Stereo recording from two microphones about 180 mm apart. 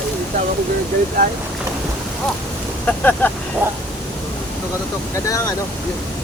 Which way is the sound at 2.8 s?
10° left (ahead or behind).